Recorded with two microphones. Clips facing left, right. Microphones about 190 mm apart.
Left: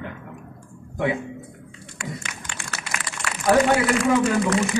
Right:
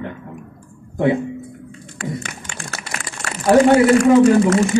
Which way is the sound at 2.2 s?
40° right (ahead or behind).